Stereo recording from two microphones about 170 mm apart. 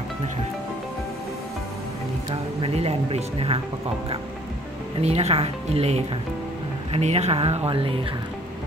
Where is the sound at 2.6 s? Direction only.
35° right (ahead or behind).